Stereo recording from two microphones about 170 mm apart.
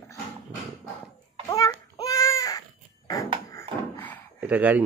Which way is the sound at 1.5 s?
20° left (ahead or behind).